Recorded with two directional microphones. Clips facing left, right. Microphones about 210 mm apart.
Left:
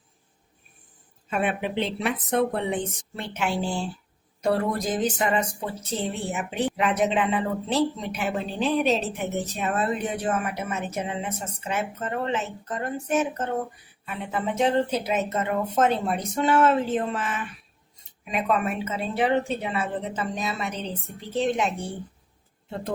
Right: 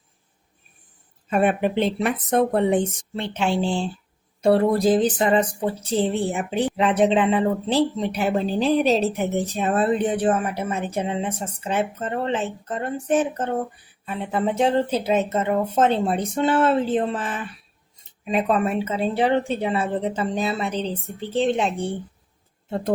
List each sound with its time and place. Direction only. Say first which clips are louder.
1.3 s speech: right 6 dB; 45° right (ahead or behind)
3.2 s a woman's voice: right 5 dB; 30° right (ahead or behind)